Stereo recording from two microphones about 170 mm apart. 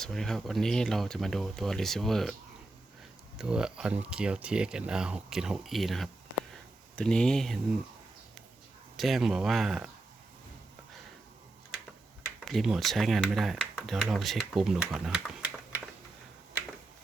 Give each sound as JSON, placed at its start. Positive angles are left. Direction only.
{"t": 0.0, "sound": "speech", "side_deg": 0}
{"t": 3.3, "sound": "speech", "side_deg": -5}
{"t": 9.0, "sound": "speech", "side_deg": 0}
{"t": 12.5, "sound": "speech", "side_deg": 0}